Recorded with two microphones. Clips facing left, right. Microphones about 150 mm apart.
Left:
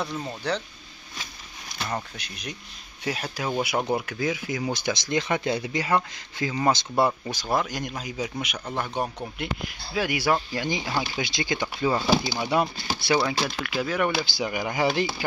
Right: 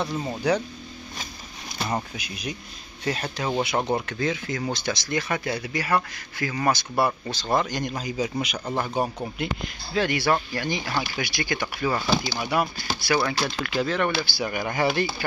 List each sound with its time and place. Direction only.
0.2 s speech: 10° right (ahead or behind)
1.9 s speech: 10° right (ahead or behind)
3.0 s speech: 5° left (ahead or behind); by 12.6 s 20° left (ahead or behind)
13.4 s speech: 5° left (ahead or behind)